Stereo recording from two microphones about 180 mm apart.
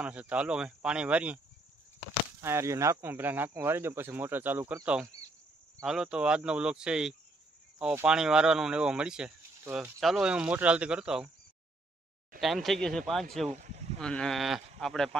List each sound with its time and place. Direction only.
0.0 s speech: 5° right (ahead or behind)
2.4 s speech: 15° right (ahead or behind)
12.4 s speech: centre (ahead or behind)
13.5 s a sound: 40° right (ahead or behind)
13.9 s speech: 5° left (ahead or behind)